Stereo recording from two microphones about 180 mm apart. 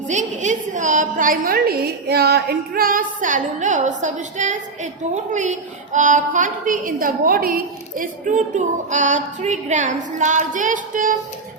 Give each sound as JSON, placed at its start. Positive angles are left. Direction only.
{"t": 0.1, "sound": "a woman's voice", "side_deg": -45}